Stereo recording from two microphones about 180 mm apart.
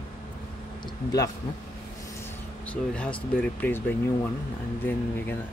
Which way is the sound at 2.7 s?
5° left (ahead or behind).